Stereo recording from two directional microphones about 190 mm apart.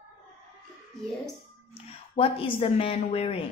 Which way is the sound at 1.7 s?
30° left (ahead or behind).